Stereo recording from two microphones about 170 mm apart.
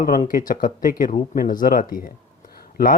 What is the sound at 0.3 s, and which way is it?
Speech, 55° left (ahead or behind).